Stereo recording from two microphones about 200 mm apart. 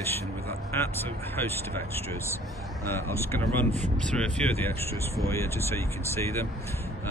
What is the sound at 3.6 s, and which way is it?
Speech, 35° right (ahead or behind).